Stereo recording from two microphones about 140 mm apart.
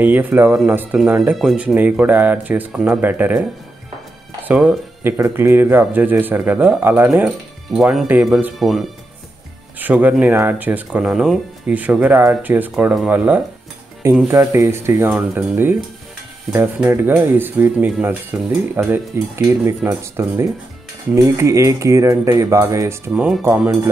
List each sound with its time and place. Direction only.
0.0 s speech: 10° right (ahead or behind)
4.5 s speech: 10° right (ahead or behind)
8.1 s speech: 15° right (ahead or behind)
8.5 s speech: centre (ahead or behind)
9.8 s speech: 10° right (ahead or behind)